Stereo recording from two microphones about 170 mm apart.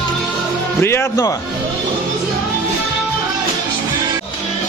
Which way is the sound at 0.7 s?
15° left (ahead or behind).